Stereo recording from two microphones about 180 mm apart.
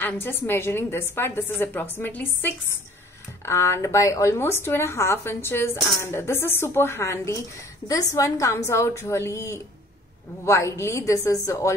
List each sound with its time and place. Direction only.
0.0 s a woman's voice: 10° left (ahead or behind)